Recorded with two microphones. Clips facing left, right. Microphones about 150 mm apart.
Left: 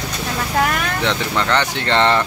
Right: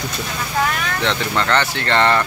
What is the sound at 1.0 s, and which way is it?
Speech, 15° left (ahead or behind).